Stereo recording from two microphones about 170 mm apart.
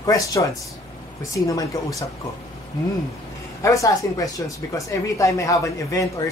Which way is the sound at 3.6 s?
20° left (ahead or behind).